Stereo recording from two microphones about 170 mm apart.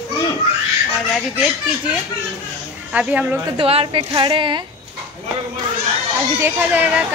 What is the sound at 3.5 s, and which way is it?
A woman's voice, 35° right (ahead or behind).